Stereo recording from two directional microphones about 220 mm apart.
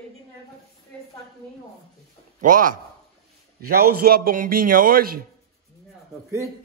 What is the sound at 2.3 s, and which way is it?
Speech, 35° right (ahead or behind).